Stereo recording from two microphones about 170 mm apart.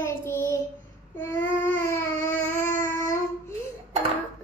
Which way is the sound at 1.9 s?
15° left (ahead or behind).